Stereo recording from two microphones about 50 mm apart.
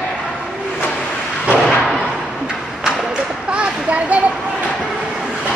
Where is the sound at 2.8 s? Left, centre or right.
Right.